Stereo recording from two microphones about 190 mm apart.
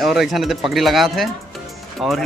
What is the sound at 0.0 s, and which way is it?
Speech, centre (ahead or behind).